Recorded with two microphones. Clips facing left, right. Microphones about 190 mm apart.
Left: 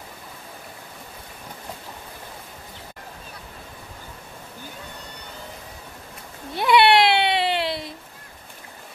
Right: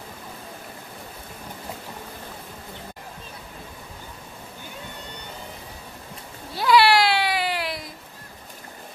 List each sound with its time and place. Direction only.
6.5 s baby cry: 20° left (ahead or behind)